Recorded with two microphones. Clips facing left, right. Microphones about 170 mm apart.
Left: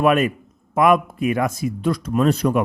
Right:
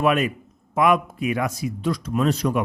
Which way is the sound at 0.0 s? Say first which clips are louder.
Left 3 dB; 50° left (ahead or behind).